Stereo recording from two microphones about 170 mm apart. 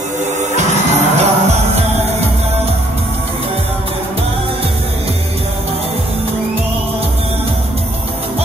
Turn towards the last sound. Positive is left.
turn(degrees=-35)  # may be behind; listen again after turning